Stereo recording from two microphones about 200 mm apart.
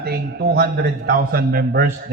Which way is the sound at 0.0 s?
50° right (ahead or behind).